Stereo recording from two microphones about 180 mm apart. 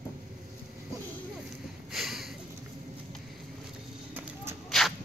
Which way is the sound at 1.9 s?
Centre (ahead or behind).